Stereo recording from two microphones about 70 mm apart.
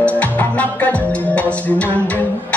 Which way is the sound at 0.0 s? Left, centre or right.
Left.